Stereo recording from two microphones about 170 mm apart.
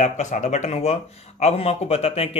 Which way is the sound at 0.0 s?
45° left (ahead or behind).